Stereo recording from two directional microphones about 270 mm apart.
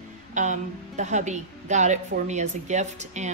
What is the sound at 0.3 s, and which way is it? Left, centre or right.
A woman's voice, right.